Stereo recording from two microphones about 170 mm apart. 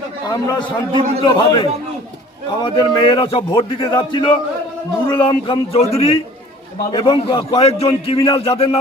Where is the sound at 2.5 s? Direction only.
25° left (ahead or behind).